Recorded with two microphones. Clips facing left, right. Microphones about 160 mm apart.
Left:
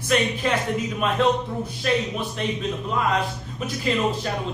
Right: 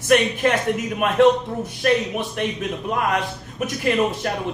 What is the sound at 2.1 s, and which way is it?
Speech, 65° right (ahead or behind).